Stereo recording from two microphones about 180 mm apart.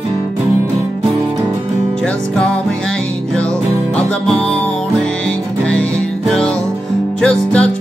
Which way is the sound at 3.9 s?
5° left (ahead or behind).